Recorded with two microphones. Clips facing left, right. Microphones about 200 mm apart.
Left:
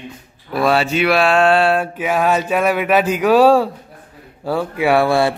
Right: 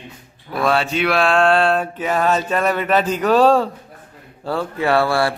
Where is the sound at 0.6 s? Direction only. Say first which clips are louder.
Left 3 dB; 5° left (ahead or behind).